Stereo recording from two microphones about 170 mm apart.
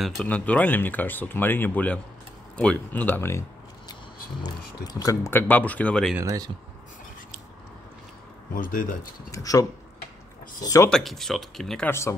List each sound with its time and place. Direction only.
0.0 s speech: 5° left (ahead or behind)
6.1 s speech: 20° right (ahead or behind)
8.5 s speech: 55° left (ahead or behind)
9.3 s speech: 20° left (ahead or behind)
10.9 s speech: centre (ahead or behind)
11.9 s speech: 15° left (ahead or behind)